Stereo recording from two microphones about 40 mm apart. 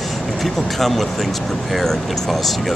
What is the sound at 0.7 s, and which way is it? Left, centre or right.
Speech, centre.